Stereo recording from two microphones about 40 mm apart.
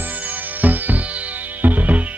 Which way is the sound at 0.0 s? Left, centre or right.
Right.